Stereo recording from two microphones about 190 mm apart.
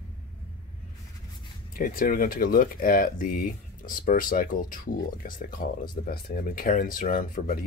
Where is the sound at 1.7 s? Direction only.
50° left (ahead or behind).